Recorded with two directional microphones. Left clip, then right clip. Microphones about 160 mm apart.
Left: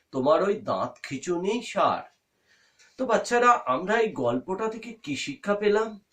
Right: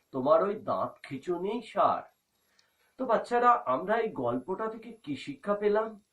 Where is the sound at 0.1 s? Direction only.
30° left (ahead or behind).